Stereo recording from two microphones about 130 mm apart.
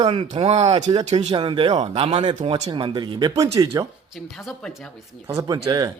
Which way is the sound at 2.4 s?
55° right (ahead or behind).